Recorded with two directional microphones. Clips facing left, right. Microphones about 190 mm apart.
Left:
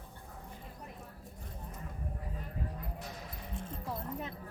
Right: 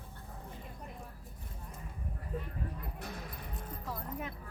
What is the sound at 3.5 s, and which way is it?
Keys jangling, 25° left (ahead or behind).